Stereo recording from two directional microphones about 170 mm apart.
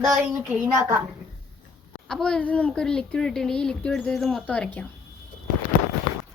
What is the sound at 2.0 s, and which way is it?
A woman's voice, 5° left (ahead or behind).